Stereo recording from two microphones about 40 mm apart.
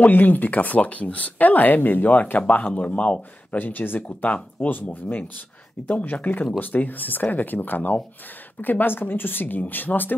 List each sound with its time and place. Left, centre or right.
0.0 s speech: left
2.4 s speech: left
3.5 s speech: left
4.2 s speech: left